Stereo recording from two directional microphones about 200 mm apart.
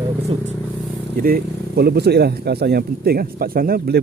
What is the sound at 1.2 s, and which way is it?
Speech, 50° right (ahead or behind).